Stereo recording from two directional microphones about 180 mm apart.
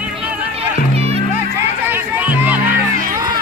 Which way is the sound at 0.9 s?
35° right (ahead or behind).